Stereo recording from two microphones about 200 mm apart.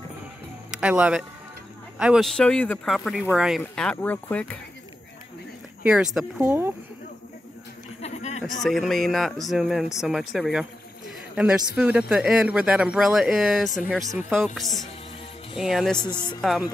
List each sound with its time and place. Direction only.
0.7 s speech: 5° right (ahead or behind)
5.9 s speech: 5° right (ahead or behind)
8.0 s a sound: 35° left (ahead or behind)
8.5 s speech: centre (ahead or behind)
16.0 s speech: 20° left (ahead or behind)
16.3 s speech: centre (ahead or behind)